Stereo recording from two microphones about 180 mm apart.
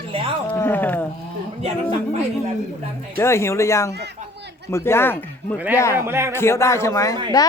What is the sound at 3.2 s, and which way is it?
Speech, 15° left (ahead or behind).